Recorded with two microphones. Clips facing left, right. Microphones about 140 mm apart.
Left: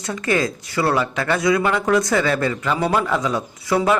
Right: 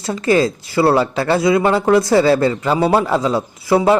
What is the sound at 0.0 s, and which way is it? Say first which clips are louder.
A man's voice: right 6 dB; 30° right (ahead or behind).